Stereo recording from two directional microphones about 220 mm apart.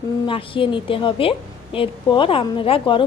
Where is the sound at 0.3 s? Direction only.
25° left (ahead or behind).